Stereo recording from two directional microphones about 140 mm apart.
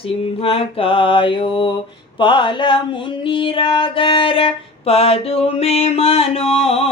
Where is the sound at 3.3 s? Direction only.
35° left (ahead or behind).